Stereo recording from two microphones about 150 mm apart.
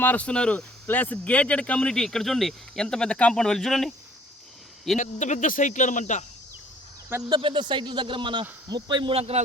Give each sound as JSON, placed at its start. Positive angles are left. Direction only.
{"t": 0.0, "sound": "speech", "side_deg": 10}
{"t": 4.9, "sound": "speech", "side_deg": 55}
{"t": 7.3, "sound": "speech", "side_deg": -30}